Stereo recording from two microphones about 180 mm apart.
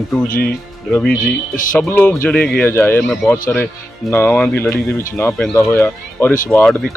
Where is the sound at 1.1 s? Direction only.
50° left (ahead or behind).